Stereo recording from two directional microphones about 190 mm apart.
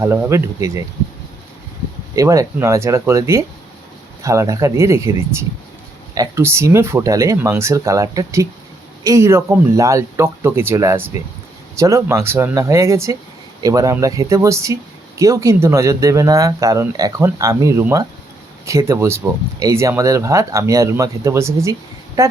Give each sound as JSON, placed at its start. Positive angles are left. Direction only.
{"t": 0.0, "sound": "speech", "side_deg": -15}
{"t": 2.1, "sound": "speech", "side_deg": -15}